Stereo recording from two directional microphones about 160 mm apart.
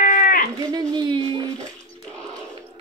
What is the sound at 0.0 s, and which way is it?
Sheep, 60° left (ahead or behind).